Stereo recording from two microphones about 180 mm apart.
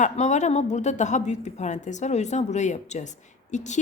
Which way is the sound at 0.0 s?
40° left (ahead or behind).